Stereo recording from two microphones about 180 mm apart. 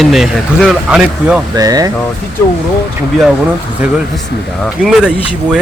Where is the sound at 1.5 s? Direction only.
20° right (ahead or behind).